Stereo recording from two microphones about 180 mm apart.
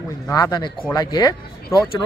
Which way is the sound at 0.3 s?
20° left (ahead or behind).